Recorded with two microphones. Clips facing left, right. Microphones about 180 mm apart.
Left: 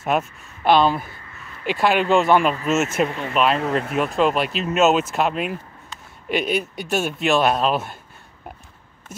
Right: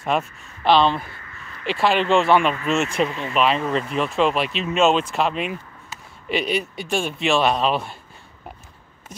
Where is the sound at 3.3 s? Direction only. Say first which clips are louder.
Left 1 dB; centre (ahead or behind).